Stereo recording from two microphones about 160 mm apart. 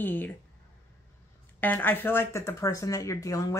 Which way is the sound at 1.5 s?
10° left (ahead or behind).